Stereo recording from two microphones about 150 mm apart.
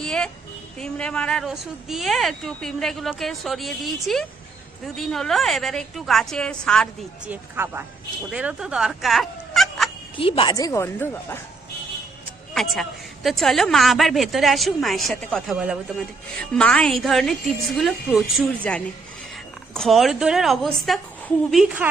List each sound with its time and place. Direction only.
0.0 s a sound: 5° left (ahead or behind)
0.8 s a woman's voice: 5° left (ahead or behind)
7.3 s speech: 15° right (ahead or behind)
10.2 s a woman's voice: 35° left (ahead or behind)
10.5 s a woman's voice: 20° left (ahead or behind)
12.5 s a woman's voice: centre (ahead or behind)
16.4 s a woman's voice: 5° left (ahead or behind)